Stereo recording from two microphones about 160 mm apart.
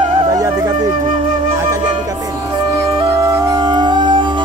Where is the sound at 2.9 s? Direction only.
20° right (ahead or behind).